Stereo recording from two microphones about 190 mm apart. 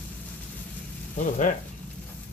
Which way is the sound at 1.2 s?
40° left (ahead or behind).